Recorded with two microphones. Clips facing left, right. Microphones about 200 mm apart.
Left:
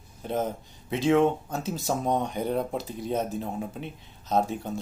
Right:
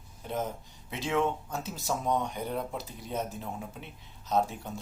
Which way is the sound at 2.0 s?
30° left (ahead or behind).